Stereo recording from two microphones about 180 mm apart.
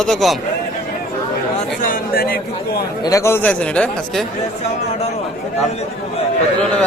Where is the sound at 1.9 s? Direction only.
60° left (ahead or behind).